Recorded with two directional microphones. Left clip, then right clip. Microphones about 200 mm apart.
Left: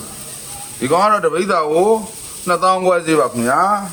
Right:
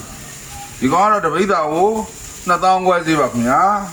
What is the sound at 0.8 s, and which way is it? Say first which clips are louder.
Speech: even; 60° left (ahead or behind).